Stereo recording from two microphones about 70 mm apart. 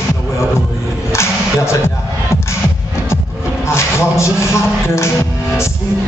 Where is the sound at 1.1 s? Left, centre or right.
Left.